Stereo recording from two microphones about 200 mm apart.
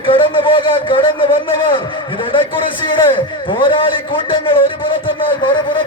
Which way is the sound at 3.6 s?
25° left (ahead or behind).